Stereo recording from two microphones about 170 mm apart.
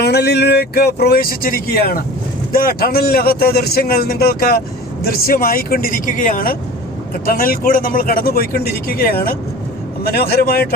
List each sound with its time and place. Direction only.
0.0 s a man's voice: 75° left (ahead or behind)